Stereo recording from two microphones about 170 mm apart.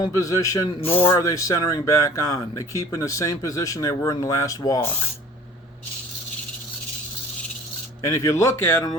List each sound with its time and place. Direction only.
0.0 s speech: 20° left (ahead or behind)
0.7 s speech: 35° left (ahead or behind)
1.1 s speech: 20° left (ahead or behind)
8.0 s speech: 20° left (ahead or behind)